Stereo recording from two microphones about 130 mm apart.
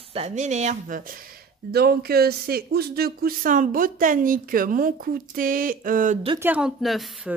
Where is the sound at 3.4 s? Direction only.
90° right.